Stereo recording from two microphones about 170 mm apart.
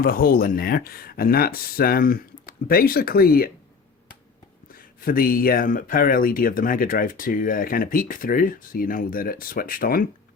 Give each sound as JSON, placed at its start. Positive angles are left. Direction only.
{"t": 0.0, "sound": "speech", "side_deg": 60}
{"t": 4.7, "sound": "speech", "side_deg": 60}